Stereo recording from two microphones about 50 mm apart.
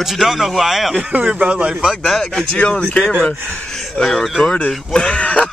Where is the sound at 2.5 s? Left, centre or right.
Centre.